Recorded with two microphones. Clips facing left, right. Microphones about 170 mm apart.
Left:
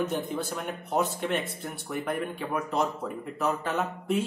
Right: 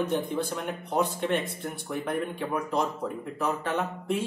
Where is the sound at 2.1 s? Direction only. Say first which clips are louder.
Right 1 dB; centre (ahead or behind).